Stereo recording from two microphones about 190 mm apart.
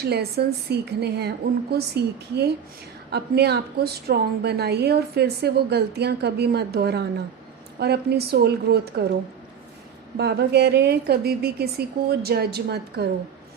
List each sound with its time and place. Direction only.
0.0 s a woman's voice: 60° right (ahead or behind)
10.2 s a woman's voice: 60° right (ahead or behind)